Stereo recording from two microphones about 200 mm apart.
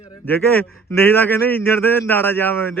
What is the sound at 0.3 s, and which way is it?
A man's voice, 10° left (ahead or behind).